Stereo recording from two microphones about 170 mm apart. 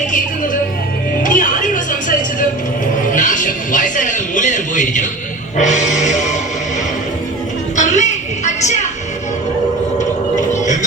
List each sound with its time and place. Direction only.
1.2 s music: 50° left (ahead or behind)
3.2 s speech: 50° left (ahead or behind)
5.5 s music: 45° left (ahead or behind)
7.8 s a sound: 45° left (ahead or behind)
10.5 s music: 45° left (ahead or behind)